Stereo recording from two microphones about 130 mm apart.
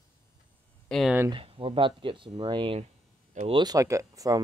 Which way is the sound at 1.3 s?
40° right (ahead or behind).